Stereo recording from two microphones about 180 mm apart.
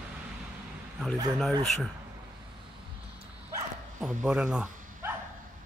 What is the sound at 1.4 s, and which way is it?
Speech, centre (ahead or behind).